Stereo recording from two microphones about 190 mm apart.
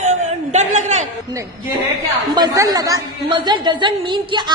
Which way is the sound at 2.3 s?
20° right (ahead or behind).